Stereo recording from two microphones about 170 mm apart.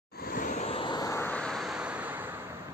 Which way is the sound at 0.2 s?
55° left (ahead or behind).